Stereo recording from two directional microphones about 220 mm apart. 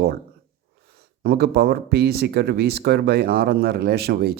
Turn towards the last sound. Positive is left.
turn(degrees=-45)  # may be behind; listen again after turning